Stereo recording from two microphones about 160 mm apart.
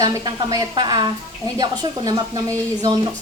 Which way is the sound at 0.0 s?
25° right (ahead or behind).